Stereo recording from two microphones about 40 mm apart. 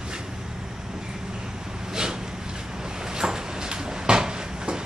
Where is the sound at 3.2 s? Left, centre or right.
Centre.